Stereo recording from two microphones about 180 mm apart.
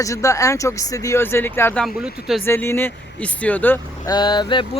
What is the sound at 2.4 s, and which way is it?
Speech, 15° left (ahead or behind).